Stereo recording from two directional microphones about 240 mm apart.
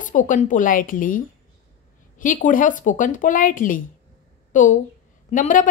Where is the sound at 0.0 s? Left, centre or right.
Left.